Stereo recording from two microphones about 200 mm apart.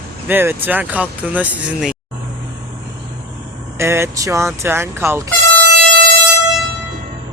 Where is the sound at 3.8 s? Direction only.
10° right (ahead or behind).